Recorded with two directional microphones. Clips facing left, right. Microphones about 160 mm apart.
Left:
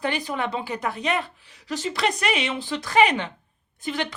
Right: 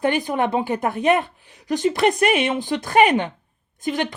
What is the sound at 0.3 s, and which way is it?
A woman's voice, 50° right (ahead or behind).